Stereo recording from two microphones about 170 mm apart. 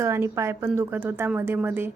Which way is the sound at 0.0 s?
15° right (ahead or behind).